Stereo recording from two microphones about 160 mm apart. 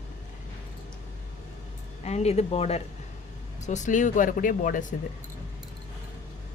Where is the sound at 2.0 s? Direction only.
40° left (ahead or behind).